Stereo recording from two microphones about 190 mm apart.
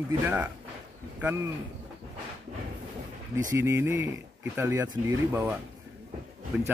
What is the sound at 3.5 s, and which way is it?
Speech, 15° right (ahead or behind).